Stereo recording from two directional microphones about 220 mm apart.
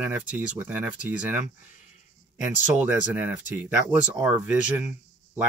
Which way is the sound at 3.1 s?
10° right (ahead or behind).